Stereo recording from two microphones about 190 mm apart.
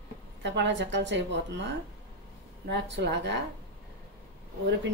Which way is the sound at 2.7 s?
65° right (ahead or behind).